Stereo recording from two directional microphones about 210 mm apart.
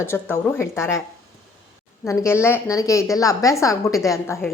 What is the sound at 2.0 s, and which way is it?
A woman's voice, 15° left (ahead or behind).